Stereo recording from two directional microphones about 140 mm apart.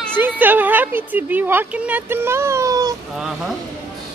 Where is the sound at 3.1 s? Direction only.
5° right (ahead or behind).